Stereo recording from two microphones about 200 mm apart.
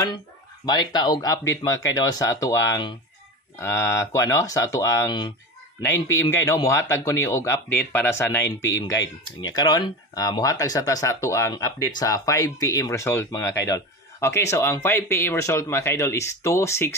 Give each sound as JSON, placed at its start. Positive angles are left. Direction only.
{"t": 0.7, "sound": "speech", "side_deg": 20}
{"t": 9.6, "sound": "speech", "side_deg": 20}